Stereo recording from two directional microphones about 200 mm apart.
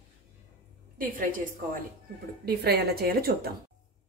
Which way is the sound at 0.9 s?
45° right (ahead or behind).